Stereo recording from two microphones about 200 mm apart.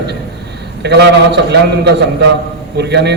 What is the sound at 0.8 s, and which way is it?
A man's voice, 55° right (ahead or behind).